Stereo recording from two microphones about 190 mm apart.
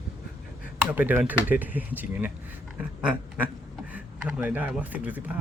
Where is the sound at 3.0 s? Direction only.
5° right (ahead or behind).